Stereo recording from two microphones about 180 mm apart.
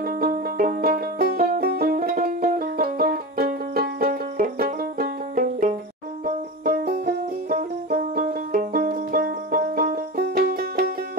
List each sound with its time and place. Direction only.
0.0 s music: 55° right (ahead or behind)